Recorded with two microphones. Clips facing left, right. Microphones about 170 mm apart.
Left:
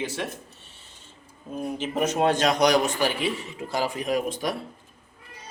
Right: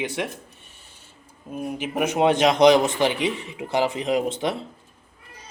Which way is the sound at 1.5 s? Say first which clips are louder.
Right 1 dB; 10° right (ahead or behind).